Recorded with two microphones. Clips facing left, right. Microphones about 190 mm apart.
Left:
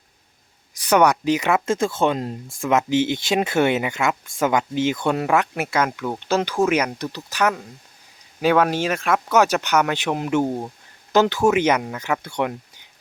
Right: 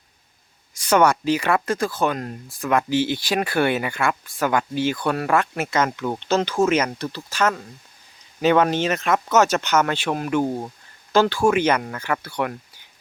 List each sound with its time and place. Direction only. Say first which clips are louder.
0.9 s speech: left 1 dB; 15° left (ahead or behind)